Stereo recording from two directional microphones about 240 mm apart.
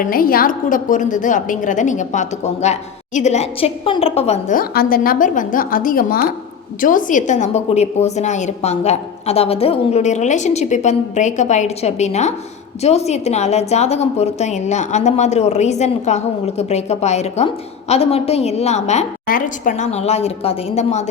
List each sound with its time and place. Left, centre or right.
0.1 s a woman's voice: left